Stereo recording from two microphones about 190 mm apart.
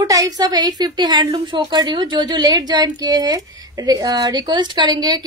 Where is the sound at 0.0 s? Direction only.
20° right (ahead or behind).